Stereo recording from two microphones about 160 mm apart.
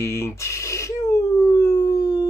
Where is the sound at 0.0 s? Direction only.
15° left (ahead or behind).